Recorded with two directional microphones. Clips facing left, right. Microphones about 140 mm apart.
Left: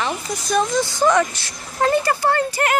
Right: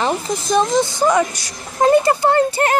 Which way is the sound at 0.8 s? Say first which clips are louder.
Right 1 dB; 10° right (ahead or behind).